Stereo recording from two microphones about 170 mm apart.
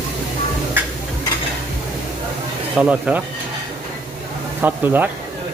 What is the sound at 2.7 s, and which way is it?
Speech, 5° right (ahead or behind).